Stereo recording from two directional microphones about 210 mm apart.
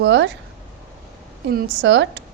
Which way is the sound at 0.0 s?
55° right (ahead or behind).